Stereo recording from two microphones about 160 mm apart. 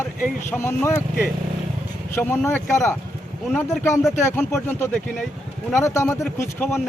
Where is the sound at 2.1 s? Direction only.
15° left (ahead or behind).